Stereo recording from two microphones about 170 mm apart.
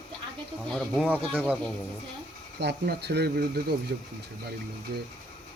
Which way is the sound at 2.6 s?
75° right (ahead or behind).